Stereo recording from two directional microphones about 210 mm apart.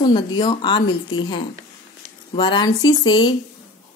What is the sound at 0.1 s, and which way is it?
A woman's voice, 20° left (ahead or behind).